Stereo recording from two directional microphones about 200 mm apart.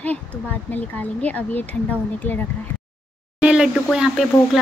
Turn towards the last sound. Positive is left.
turn(degrees=0)  # may be behind; listen again after turning